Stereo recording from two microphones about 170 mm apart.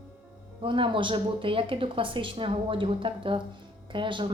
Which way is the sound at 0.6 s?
30° right (ahead or behind).